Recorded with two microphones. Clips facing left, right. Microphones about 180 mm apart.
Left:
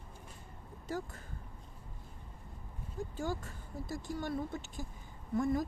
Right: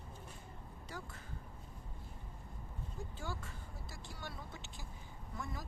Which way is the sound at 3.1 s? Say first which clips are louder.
Left 10 dB; 45° left (ahead or behind).